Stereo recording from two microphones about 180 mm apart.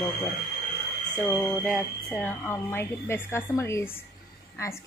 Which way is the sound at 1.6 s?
Centre (ahead or behind).